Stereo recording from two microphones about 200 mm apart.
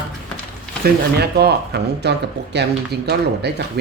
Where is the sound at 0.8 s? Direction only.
55° right (ahead or behind).